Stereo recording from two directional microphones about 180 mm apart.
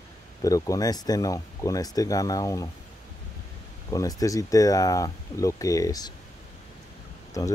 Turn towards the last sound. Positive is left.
turn(degrees=20)  # may be behind; listen again after turning